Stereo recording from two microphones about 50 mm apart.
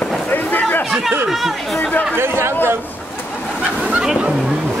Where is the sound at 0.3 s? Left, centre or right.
Left.